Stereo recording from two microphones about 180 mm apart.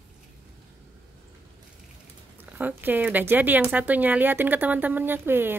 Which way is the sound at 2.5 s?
10° right (ahead or behind).